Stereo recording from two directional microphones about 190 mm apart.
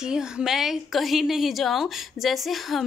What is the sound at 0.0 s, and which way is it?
A woman's voice, 5° right (ahead or behind).